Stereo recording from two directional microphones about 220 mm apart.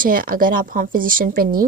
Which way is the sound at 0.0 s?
40° right (ahead or behind).